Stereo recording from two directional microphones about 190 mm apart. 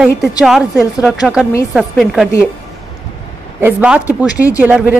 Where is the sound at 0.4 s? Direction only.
Centre (ahead or behind).